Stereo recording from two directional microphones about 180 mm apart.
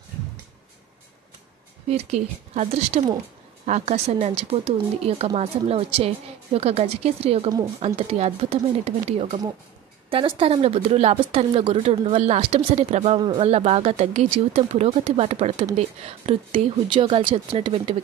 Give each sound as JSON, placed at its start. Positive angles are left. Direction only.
{"t": 1.9, "sound": "speech", "side_deg": -35}
{"t": 13.2, "sound": "speech", "side_deg": -25}
{"t": 13.5, "sound": "speech", "side_deg": -35}